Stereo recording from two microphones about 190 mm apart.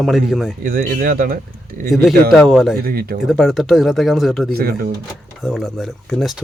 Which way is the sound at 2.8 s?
50° right (ahead or behind).